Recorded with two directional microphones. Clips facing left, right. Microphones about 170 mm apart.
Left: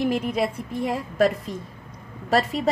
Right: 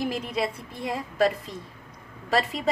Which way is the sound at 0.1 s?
55° left (ahead or behind).